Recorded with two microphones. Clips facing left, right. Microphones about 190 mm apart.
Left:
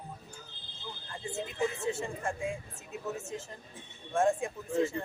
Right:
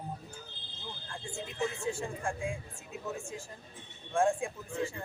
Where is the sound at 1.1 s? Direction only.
5° left (ahead or behind).